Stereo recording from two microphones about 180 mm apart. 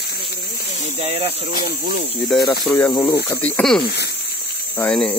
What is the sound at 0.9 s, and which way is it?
Speech, 35° right (ahead or behind).